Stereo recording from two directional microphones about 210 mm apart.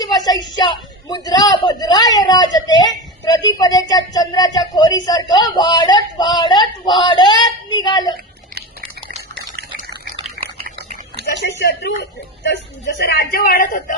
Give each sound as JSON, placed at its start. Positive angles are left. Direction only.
{"t": 0.0, "sound": "a woman's voice", "side_deg": 20}
{"t": 10.4, "sound": "a sound", "side_deg": -55}
{"t": 11.3, "sound": "a man's voice", "side_deg": 50}